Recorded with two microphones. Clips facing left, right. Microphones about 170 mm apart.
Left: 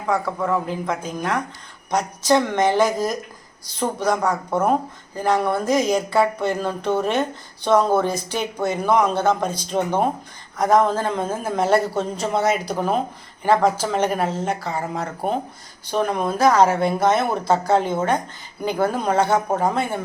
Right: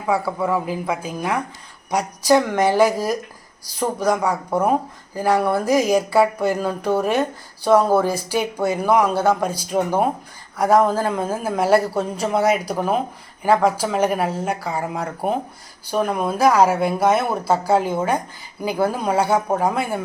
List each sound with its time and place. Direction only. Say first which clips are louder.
0.0 s speech: right 1 dB; 10° right (ahead or behind)